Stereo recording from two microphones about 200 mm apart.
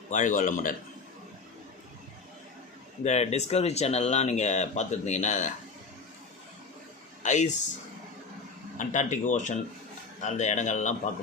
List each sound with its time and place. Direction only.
0.1 s speech: 40° left (ahead or behind)
3.0 s speech: 35° left (ahead or behind)
7.2 s speech: 35° left (ahead or behind)
8.8 s speech: 40° left (ahead or behind)